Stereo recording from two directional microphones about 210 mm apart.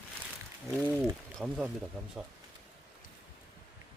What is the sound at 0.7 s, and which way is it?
Speech, 5° left (ahead or behind).